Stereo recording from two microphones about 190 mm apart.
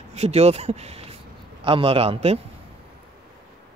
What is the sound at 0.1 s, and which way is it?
Speech, 35° right (ahead or behind).